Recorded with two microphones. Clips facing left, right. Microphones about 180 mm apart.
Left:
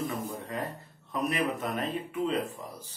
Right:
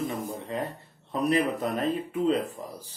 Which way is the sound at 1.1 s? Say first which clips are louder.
Right 5 dB; 35° right (ahead or behind).